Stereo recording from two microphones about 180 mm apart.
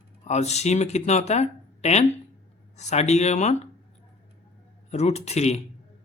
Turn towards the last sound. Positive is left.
turn(degrees=40)  # may be behind; listen again after turning